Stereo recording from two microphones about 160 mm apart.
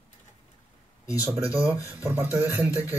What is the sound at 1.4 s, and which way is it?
Speech, 5° right (ahead or behind).